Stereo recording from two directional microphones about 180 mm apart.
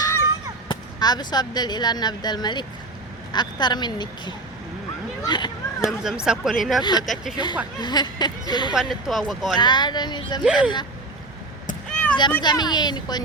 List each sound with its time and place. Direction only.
0.0 s fireworks: 15° left (ahead or behind)
0.7 s speech: 20° left (ahead or behind)
6.0 s speech: 5° right (ahead or behind)
7.8 s speech: 25° left (ahead or behind)
8.7 s speech: centre (ahead or behind)
9.6 s speech: 25° left (ahead or behind)
11.9 s a sound: 5° left (ahead or behind)
12.4 s speech: 25° left (ahead or behind)